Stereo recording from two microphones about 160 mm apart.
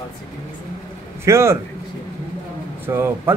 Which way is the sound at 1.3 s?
15° right (ahead or behind).